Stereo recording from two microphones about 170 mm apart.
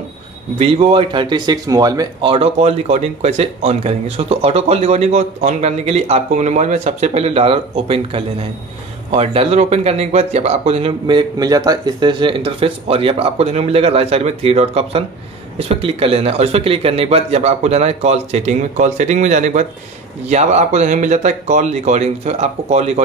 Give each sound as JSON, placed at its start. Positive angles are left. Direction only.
{"t": 0.6, "sound": "speech", "side_deg": -35}
{"t": 2.3, "sound": "speech", "side_deg": -35}